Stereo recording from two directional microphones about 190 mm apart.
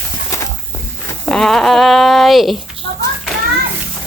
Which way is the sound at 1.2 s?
5° left (ahead or behind).